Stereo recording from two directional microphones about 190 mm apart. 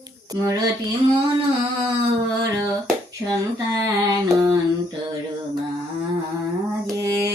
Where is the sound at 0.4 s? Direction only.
20° right (ahead or behind).